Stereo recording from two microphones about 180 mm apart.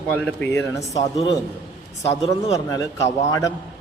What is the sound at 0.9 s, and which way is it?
A man's voice, 20° left (ahead or behind).